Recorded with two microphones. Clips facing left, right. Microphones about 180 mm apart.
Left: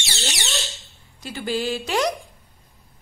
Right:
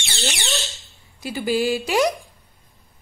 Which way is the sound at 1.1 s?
10° right (ahead or behind).